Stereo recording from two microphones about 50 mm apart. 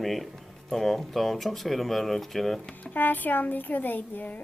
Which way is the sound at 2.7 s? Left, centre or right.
Left.